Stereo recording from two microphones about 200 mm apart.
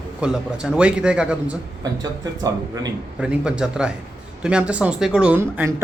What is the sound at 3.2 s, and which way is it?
Speech, 5° right (ahead or behind).